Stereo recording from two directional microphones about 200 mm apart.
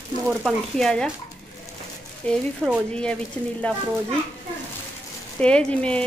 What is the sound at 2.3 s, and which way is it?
Speech, 5° left (ahead or behind).